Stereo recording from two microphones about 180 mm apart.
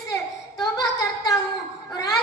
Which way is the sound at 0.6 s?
20° left (ahead or behind).